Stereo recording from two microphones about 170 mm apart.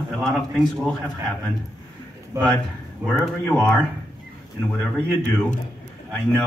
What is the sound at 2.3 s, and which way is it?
Speech, 20° right (ahead or behind).